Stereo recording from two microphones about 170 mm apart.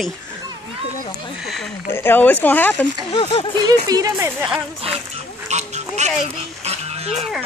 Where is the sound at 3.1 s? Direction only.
30° left (ahead or behind).